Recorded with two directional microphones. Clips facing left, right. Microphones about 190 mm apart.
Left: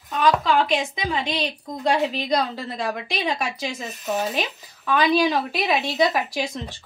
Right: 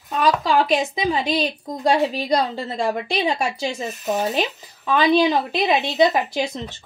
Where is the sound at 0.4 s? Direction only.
35° right (ahead or behind).